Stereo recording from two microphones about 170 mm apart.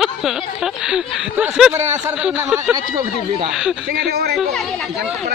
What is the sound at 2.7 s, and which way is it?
Speech, 25° right (ahead or behind).